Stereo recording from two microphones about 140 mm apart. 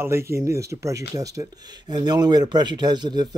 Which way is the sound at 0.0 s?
20° right (ahead or behind).